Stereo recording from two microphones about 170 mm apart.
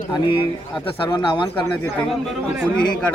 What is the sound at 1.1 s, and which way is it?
Speech, 25° left (ahead or behind).